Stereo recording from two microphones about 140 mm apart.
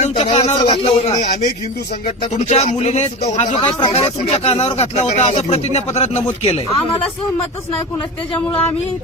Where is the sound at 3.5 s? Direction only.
30° left (ahead or behind).